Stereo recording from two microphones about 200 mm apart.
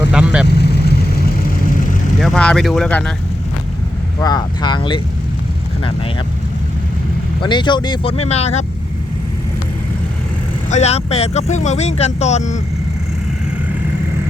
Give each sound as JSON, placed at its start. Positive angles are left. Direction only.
{"t": 0.1, "sound": "speech", "side_deg": -5}
{"t": 0.4, "sound": "vehicle", "side_deg": 55}
{"t": 2.2, "sound": "speech", "side_deg": 5}
{"t": 4.2, "sound": "speech", "side_deg": 20}
{"t": 7.4, "sound": "speech", "side_deg": 25}
{"t": 10.7, "sound": "speech", "side_deg": 35}